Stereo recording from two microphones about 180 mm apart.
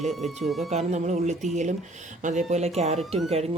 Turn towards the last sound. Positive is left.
turn(degrees=-35)  # may be behind; listen again after turning